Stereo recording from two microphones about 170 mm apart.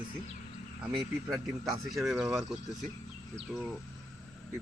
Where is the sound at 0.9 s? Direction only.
25° right (ahead or behind).